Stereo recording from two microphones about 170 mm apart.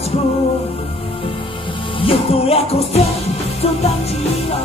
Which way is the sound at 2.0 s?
35° left (ahead or behind).